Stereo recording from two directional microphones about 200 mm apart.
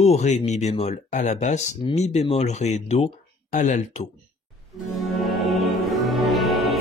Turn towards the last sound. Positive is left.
turn(degrees=0)  # may be behind; listen again after turning